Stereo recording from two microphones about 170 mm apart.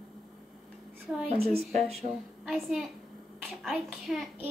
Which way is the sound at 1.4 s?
65° right (ahead or behind).